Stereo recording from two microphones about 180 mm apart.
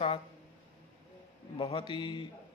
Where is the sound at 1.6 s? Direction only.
25° left (ahead or behind).